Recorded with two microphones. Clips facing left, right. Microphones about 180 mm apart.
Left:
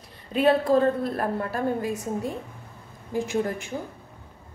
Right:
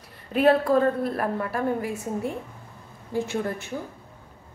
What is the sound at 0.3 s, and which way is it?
A woman's voice, 20° left (ahead or behind).